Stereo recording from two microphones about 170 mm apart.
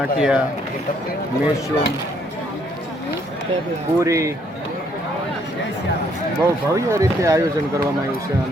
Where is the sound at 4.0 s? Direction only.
20° right (ahead or behind).